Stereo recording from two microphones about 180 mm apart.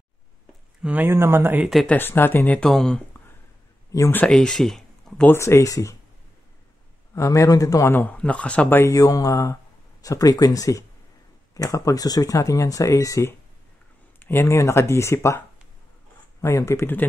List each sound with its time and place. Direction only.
0.8 s speech: 10° right (ahead or behind)
1.7 s speech: centre (ahead or behind)
2.0 s a man's voice: 10° left (ahead or behind)
3.9 s a man's voice: 15° left (ahead or behind)
7.2 s a man's voice: 15° left (ahead or behind)